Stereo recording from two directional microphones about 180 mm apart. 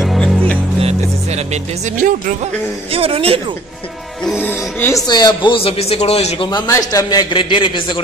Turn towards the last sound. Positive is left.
turn(degrees=30)  # may be behind; listen again after turning